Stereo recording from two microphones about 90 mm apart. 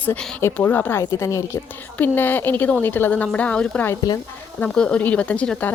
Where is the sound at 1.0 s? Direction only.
35° left (ahead or behind).